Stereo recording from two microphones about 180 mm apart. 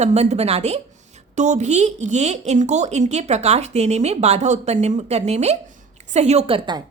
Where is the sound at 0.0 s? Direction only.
40° right (ahead or behind).